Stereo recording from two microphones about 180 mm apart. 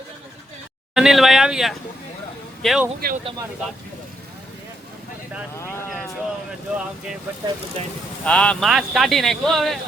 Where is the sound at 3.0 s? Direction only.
60° right (ahead or behind).